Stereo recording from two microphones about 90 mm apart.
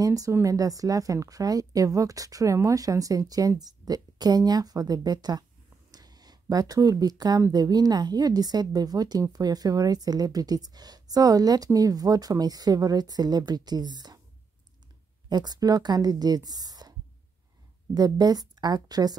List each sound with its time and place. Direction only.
0.0 s speech: 40° right (ahead or behind)
5.9 s a sound: 45° right (ahead or behind)
7.5 s a woman's voice: 45° right (ahead or behind)
15.2 s speech: 50° right (ahead or behind)
17.9 s a woman's voice: 45° right (ahead or behind)